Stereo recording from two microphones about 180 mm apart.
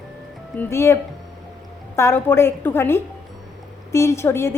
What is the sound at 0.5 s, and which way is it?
Speech, 10° left (ahead or behind).